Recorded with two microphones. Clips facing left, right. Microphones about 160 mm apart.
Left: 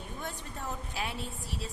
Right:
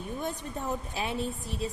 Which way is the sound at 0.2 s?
20° right (ahead or behind).